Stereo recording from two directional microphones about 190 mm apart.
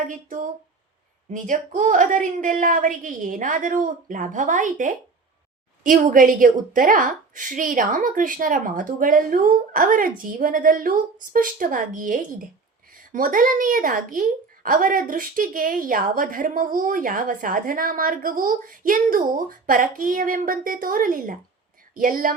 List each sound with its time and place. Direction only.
0.0 s a woman's voice: 45° right (ahead or behind)